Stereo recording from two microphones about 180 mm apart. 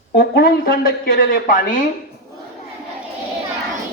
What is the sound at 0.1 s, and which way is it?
Speech, 60° left (ahead or behind).